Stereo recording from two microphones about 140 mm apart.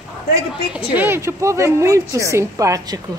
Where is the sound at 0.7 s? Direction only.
15° right (ahead or behind).